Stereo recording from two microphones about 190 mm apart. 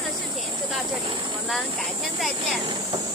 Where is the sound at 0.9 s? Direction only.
25° right (ahead or behind).